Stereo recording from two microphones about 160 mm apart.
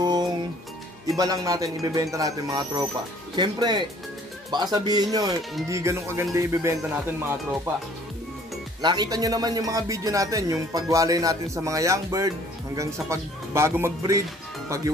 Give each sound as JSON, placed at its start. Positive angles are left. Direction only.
{"t": 0.0, "sound": "music", "side_deg": -25}
{"t": 1.0, "sound": "speech", "side_deg": -20}
{"t": 8.8, "sound": "speech", "side_deg": -25}